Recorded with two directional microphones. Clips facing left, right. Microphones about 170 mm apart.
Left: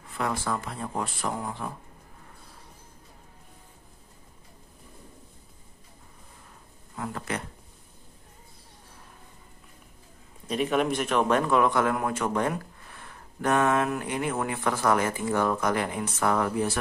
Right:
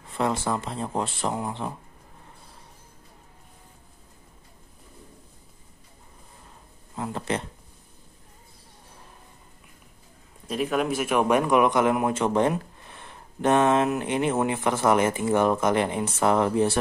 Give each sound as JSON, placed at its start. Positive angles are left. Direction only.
{"t": 0.1, "sound": "a man's voice", "side_deg": -25}
{"t": 7.0, "sound": "a man's voice", "side_deg": -25}
{"t": 10.5, "sound": "a man's voice", "side_deg": 0}